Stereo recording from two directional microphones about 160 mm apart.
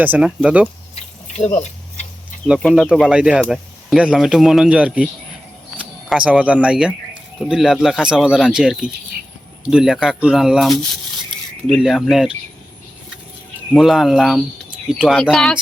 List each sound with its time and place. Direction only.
0.0 s speech: 10° right (ahead or behind)
1.5 s tick-tock: 45° left (ahead or behind)
2.6 s speech: 5° left (ahead or behind)
13.7 s speech: centre (ahead or behind)